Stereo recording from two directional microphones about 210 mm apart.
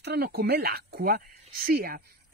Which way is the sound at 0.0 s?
50° right (ahead or behind).